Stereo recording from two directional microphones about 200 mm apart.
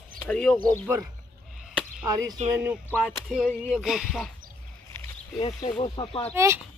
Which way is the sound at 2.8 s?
10° left (ahead or behind).